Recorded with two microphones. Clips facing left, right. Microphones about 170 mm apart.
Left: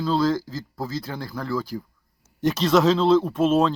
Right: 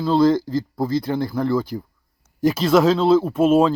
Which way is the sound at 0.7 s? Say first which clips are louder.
Right 7 dB; 10° right (ahead or behind).